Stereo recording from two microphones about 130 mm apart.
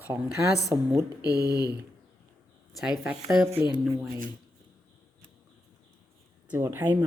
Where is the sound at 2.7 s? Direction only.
5° right (ahead or behind).